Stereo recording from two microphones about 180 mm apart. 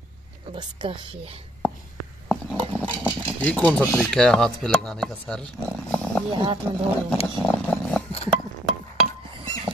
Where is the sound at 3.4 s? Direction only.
5° left (ahead or behind).